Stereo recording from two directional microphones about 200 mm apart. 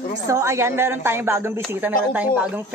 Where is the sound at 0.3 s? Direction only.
15° right (ahead or behind).